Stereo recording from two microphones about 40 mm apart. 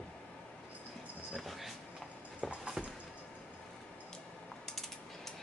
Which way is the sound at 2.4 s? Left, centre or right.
Left.